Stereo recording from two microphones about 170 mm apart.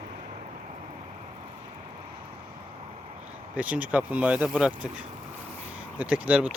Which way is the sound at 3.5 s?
10° right (ahead or behind).